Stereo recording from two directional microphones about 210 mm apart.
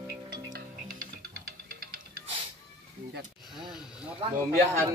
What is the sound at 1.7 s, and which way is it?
Music, 45° right (ahead or behind).